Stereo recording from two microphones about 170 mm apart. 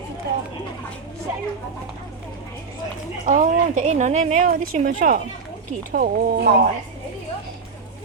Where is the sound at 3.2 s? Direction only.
50° right (ahead or behind).